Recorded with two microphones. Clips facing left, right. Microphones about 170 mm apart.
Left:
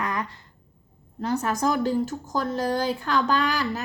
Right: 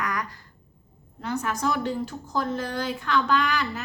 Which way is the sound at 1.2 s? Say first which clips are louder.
Left 3 dB; 40° left (ahead or behind).